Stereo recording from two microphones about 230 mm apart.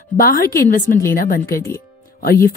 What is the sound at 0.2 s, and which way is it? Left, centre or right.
Speech, left.